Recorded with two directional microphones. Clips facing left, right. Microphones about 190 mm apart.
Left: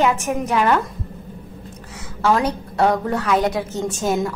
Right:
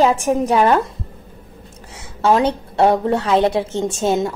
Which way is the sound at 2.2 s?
25° right (ahead or behind).